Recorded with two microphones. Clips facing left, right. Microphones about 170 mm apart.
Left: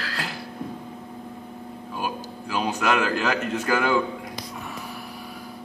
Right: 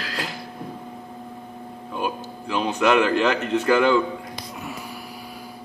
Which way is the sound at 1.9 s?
5° left (ahead or behind).